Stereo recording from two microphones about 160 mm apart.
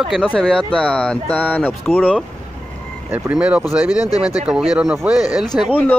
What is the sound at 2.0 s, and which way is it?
Speech, 5° right (ahead or behind).